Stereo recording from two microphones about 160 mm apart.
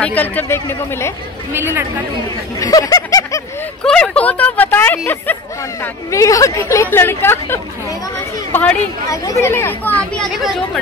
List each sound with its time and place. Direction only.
0.0 s speech: 10° left (ahead or behind)
1.5 s a woman's voice: 15° right (ahead or behind)
2.6 s a sound: 20° left (ahead or behind)
3.8 s speech: 5° left (ahead or behind)